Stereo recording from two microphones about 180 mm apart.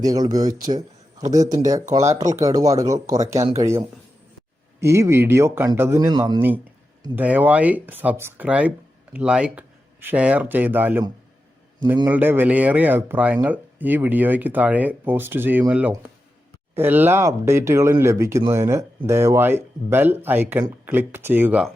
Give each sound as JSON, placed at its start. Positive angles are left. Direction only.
{"t": 0.0, "sound": "speech", "side_deg": -20}
{"t": 4.8, "sound": "speech", "side_deg": -15}
{"t": 7.2, "sound": "speech", "side_deg": -10}